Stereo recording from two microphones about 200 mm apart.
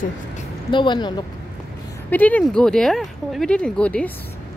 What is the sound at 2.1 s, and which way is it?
Speech, 10° left (ahead or behind).